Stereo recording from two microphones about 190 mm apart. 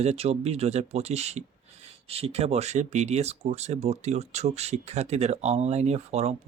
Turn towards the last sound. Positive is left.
turn(degrees=-35)  # may be behind; listen again after turning